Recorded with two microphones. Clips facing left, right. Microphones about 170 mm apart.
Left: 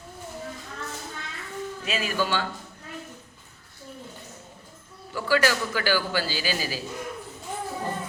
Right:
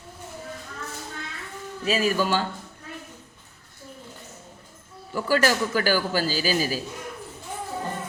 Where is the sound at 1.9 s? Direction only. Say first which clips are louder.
Right 5 dB; 40° right (ahead or behind).